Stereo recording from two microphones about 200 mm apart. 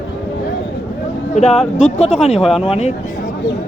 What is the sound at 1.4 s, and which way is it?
Speech, 35° left (ahead or behind).